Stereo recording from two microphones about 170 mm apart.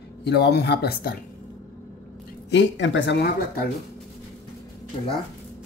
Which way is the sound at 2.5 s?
90° left.